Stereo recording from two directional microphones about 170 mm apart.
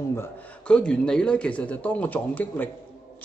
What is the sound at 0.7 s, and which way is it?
Speech, 5° left (ahead or behind).